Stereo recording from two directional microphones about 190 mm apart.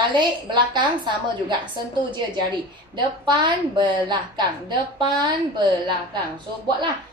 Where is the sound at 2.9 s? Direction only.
25° right (ahead or behind).